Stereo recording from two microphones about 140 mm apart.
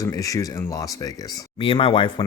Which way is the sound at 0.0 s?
25° left (ahead or behind).